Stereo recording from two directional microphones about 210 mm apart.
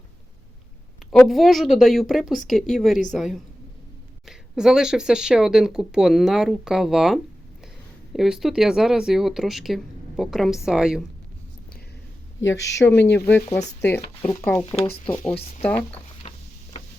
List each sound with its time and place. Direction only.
1.1 s speech: centre (ahead or behind)
12.4 s speech: 60° left (ahead or behind)
13.1 s speech: 10° left (ahead or behind)
14.6 s speech: 30° left (ahead or behind)
16.2 s vehicle: 30° left (ahead or behind)